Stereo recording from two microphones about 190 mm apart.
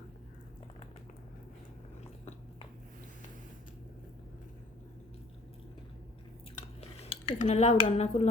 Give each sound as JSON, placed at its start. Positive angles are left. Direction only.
{"t": 6.8, "sound": "speech", "side_deg": 35}